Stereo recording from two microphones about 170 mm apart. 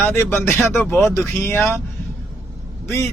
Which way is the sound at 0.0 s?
15° left (ahead or behind).